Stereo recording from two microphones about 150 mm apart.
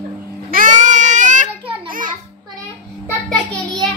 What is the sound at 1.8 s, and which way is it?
Speech, 65° right (ahead or behind).